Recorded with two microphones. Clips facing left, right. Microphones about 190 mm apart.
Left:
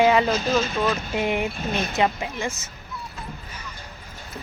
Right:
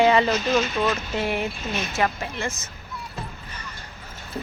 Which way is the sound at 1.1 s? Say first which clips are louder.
Left 2 dB; 15° left (ahead or behind).